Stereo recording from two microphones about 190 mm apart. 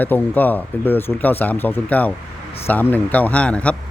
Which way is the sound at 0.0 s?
10° left (ahead or behind).